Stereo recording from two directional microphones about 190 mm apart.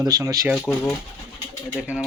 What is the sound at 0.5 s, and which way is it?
Speech, centre (ahead or behind).